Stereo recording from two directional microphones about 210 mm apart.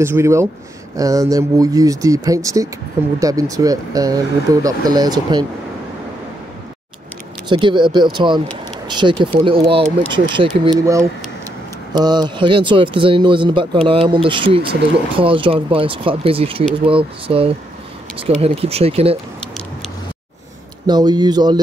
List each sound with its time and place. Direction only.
0.0 s speech: 10° right (ahead or behind)
7.4 s speech: 20° right (ahead or behind)
20.8 s speech: 20° right (ahead or behind)